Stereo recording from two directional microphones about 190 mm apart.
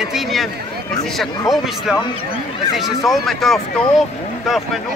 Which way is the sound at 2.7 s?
Centre (ahead or behind).